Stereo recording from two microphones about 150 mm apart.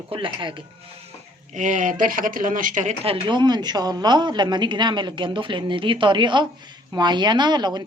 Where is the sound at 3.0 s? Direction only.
35° right (ahead or behind).